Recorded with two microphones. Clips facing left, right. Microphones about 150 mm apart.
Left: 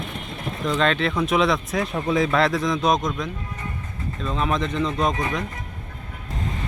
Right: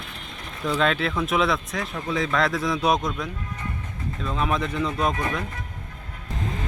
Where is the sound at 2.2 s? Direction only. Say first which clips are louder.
Left 3 dB; 10° left (ahead or behind).